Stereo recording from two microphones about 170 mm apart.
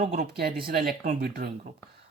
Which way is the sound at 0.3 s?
65° right (ahead or behind).